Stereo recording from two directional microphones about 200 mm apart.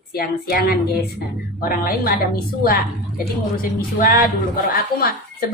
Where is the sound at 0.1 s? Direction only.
50° left (ahead or behind).